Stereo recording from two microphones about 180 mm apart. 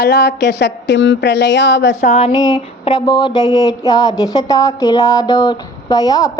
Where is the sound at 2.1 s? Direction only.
30° left (ahead or behind).